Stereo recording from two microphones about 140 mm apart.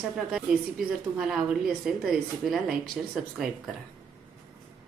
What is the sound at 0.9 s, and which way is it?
A woman's voice, 5° right (ahead or behind).